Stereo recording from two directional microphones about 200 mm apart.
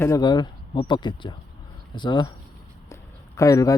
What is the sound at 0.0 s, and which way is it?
Speech, 20° left (ahead or behind).